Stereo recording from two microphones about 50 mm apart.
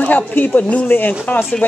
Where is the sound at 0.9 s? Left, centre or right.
Left.